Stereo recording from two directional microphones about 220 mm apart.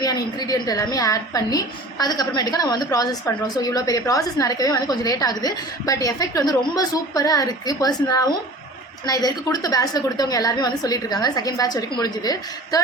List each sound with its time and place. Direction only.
0.0 s a woman's voice: 15° left (ahead or behind)